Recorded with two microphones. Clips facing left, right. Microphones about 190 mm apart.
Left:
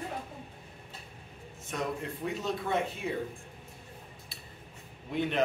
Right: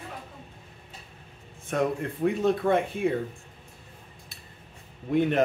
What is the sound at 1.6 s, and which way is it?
Speech, 55° right (ahead or behind).